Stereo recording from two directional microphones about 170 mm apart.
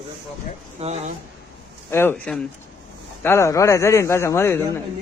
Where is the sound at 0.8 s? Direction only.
40° right (ahead or behind).